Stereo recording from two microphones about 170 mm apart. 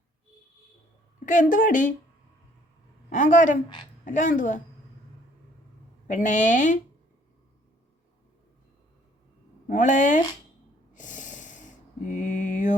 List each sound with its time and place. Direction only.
1.2 s a woman's voice: 50° left (ahead or behind)
3.1 s a woman's voice: 50° left (ahead or behind)
6.1 s a woman's voice: 50° left (ahead or behind)
9.6 s a woman's voice: 50° left (ahead or behind)
10.9 s a sound: 50° left (ahead or behind)